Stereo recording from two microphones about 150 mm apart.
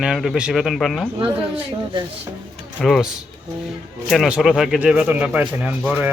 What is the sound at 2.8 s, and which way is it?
Speech, centre (ahead or behind).